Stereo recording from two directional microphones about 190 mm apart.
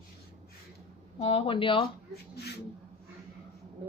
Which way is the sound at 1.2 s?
30° left (ahead or behind).